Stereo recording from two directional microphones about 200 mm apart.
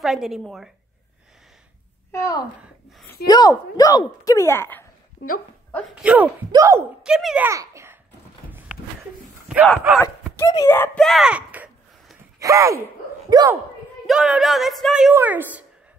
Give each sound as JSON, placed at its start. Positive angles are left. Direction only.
{"t": 0.0, "sound": "a woman's voice", "side_deg": 0}
{"t": 2.1, "sound": "a woman's voice", "side_deg": 15}
{"t": 6.0, "sound": "speech", "side_deg": -5}
{"t": 7.0, "sound": "a woman's voice", "side_deg": 0}
{"t": 7.4, "sound": "a child's voice", "side_deg": -15}
{"t": 9.5, "sound": "a woman's voice", "side_deg": -5}
{"t": 9.9, "sound": "a woman's voice", "side_deg": 10}
{"t": 11.1, "sound": "a sound", "side_deg": -5}
{"t": 12.4, "sound": "speech", "side_deg": -15}
{"t": 14.0, "sound": "a woman's voice", "side_deg": -5}